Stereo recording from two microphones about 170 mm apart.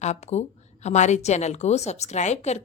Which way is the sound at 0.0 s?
40° left (ahead or behind).